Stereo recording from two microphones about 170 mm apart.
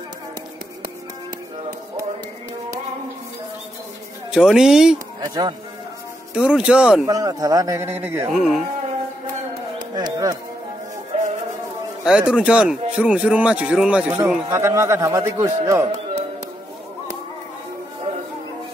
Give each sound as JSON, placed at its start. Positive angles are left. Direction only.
{"t": 4.3, "sound": "speech", "side_deg": -5}
{"t": 5.2, "sound": "a man's voice", "side_deg": -25}
{"t": 6.3, "sound": "speech", "side_deg": -5}
{"t": 7.1, "sound": "a man's voice", "side_deg": -20}
{"t": 8.3, "sound": "speech", "side_deg": 0}
{"t": 9.9, "sound": "a sound", "side_deg": -20}
{"t": 12.0, "sound": "a man's voice", "side_deg": -5}